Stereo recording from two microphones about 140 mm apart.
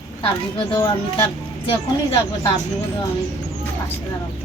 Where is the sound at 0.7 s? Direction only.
25° left (ahead or behind).